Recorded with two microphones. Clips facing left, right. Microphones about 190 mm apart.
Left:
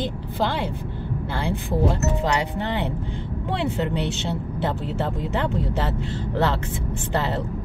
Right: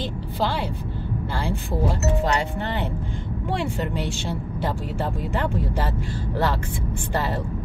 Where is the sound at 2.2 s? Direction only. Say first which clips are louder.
Even; 20° left (ahead or behind).